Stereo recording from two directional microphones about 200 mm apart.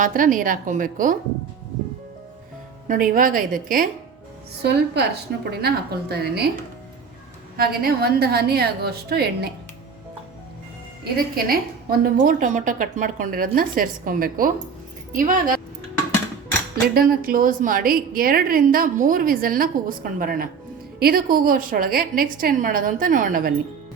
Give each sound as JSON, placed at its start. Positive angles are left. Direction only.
{"t": 0.0, "sound": "a woman's voice", "side_deg": -40}
{"t": 2.8, "sound": "a woman's voice", "side_deg": -40}
{"t": 4.6, "sound": "a woman's voice", "side_deg": -55}
{"t": 7.5, "sound": "a woman's voice", "side_deg": -50}
{"t": 11.4, "sound": "a woman's voice", "side_deg": -45}
{"t": 16.9, "sound": "a woman's voice", "side_deg": -50}